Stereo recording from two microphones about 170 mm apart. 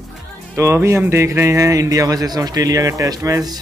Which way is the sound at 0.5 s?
15° right (ahead or behind).